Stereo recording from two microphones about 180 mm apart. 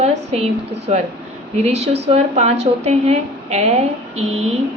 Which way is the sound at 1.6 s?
35° right (ahead or behind).